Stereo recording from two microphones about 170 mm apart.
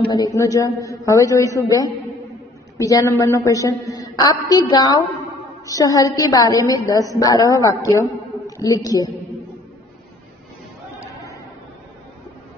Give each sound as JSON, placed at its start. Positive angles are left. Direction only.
{"t": 0.0, "sound": "a woman's voice", "side_deg": 25}